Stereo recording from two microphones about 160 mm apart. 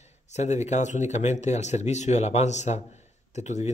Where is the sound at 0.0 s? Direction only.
45° left (ahead or behind).